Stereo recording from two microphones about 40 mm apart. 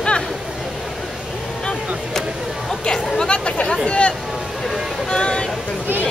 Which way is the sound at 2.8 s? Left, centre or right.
Left.